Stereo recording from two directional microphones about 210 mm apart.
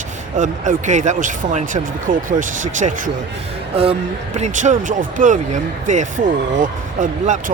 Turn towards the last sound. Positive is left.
turn(degrees=-40)  # may be behind; listen again after turning